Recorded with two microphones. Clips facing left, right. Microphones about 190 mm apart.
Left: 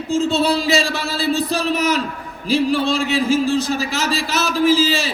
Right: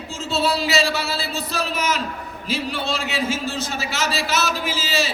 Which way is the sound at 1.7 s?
35° left (ahead or behind).